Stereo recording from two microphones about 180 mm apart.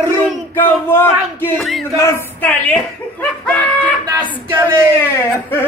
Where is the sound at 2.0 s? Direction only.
10° left (ahead or behind).